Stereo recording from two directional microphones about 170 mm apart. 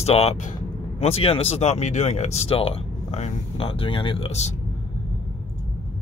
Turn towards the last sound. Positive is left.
turn(degrees=35)  # may be behind; listen again after turning